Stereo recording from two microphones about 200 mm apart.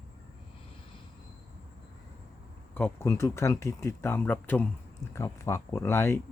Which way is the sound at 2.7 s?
10° left (ahead or behind).